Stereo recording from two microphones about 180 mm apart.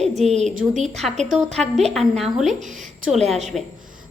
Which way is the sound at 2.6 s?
45° right (ahead or behind).